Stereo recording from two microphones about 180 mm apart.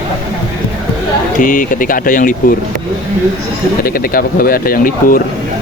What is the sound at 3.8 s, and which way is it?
Speech, 55° left (ahead or behind).